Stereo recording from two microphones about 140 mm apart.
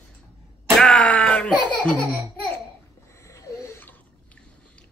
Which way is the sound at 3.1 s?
20° left (ahead or behind).